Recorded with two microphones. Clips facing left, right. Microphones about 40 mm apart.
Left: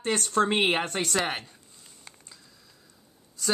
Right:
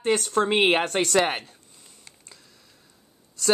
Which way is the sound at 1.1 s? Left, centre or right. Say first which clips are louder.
Right 6 dB; right.